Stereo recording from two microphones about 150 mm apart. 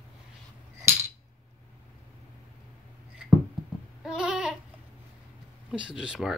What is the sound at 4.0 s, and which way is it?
Goat, 5° right (ahead or behind).